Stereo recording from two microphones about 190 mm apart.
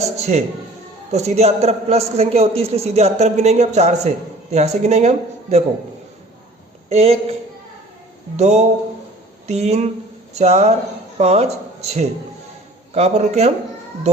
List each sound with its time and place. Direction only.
0.2 s a man's voice: 35° right (ahead or behind)
6.9 s a man's voice: 35° right (ahead or behind)
8.4 s a man's voice: 35° right (ahead or behind)